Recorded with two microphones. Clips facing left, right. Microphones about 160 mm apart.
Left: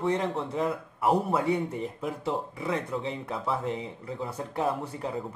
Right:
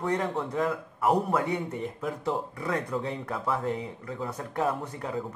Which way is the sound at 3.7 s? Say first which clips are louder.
Right 1 dB; 25° left (ahead or behind).